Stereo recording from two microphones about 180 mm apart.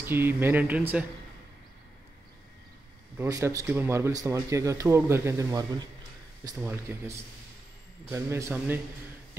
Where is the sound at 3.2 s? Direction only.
15° right (ahead or behind).